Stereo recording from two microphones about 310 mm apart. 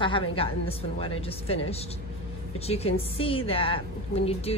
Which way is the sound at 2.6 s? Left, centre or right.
Centre.